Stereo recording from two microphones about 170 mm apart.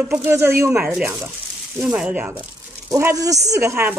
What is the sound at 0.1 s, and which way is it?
Speech, 15° right (ahead or behind).